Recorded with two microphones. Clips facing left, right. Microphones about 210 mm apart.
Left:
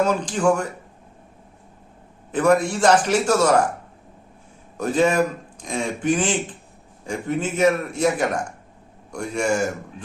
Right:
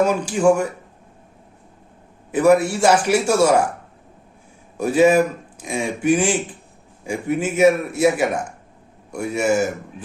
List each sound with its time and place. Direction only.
0.0 s speech: 10° right (ahead or behind)
2.3 s speech: 10° right (ahead or behind)
4.8 s speech: 10° right (ahead or behind)